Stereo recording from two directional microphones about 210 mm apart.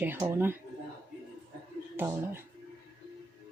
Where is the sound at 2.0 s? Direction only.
10° right (ahead or behind).